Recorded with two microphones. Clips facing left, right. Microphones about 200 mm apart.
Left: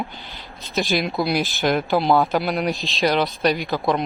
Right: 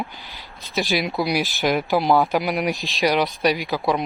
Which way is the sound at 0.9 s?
5° right (ahead or behind).